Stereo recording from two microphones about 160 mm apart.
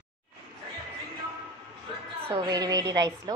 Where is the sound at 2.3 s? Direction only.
25° right (ahead or behind).